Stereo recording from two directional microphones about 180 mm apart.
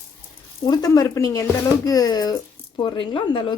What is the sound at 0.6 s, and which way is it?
Speech, 20° left (ahead or behind).